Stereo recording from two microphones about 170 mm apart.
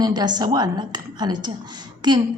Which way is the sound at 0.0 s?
25° right (ahead or behind).